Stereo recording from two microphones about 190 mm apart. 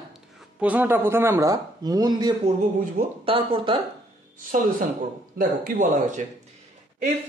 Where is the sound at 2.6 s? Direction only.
40° right (ahead or behind).